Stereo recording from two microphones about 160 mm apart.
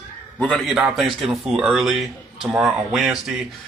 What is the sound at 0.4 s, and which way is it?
Speech, centre (ahead or behind).